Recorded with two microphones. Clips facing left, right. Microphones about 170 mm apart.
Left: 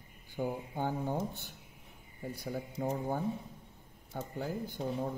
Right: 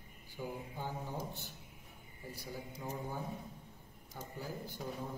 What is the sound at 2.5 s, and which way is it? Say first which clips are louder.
Speech: left 8 dB; 55° left (ahead or behind).